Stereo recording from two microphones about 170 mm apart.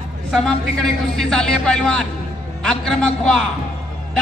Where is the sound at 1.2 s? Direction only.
5° left (ahead or behind).